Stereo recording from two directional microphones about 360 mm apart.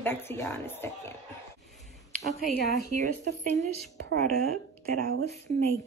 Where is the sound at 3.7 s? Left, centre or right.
Right.